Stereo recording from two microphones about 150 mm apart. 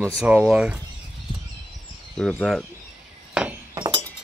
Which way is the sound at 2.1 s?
5° left (ahead or behind).